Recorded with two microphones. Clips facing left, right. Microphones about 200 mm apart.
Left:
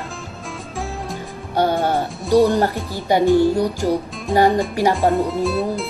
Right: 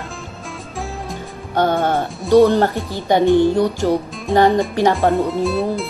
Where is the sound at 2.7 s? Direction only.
15° right (ahead or behind).